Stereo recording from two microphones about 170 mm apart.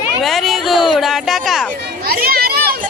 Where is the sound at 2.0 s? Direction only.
60° right (ahead or behind).